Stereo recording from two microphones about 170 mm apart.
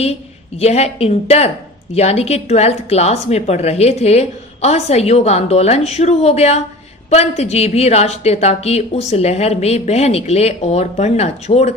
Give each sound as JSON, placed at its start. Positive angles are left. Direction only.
{"t": 0.6, "sound": "a woman's voice", "side_deg": 40}